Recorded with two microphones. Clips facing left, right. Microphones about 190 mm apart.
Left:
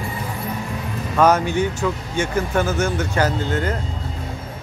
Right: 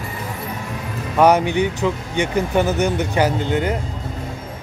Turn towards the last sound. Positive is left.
turn(degrees=-15)  # may be behind; listen again after turning